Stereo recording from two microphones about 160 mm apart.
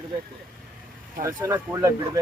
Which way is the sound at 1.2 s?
20° right (ahead or behind).